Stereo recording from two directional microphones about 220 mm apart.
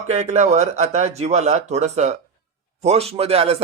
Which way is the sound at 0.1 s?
30° right (ahead or behind).